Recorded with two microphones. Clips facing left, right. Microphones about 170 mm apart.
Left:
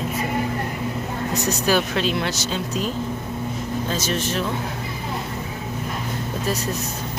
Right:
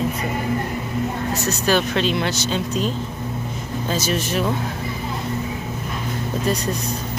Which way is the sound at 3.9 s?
10° right (ahead or behind).